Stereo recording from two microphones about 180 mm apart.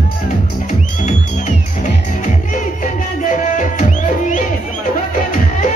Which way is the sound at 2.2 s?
45° left (ahead or behind).